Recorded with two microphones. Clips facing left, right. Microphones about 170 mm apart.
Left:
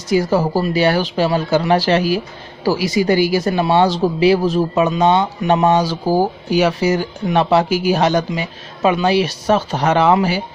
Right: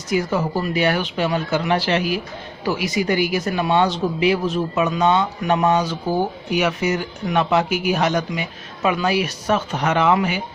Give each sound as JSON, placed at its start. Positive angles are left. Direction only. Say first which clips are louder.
{"t": 0.1, "sound": "speech", "louder": "left 5 dB", "side_deg": 35}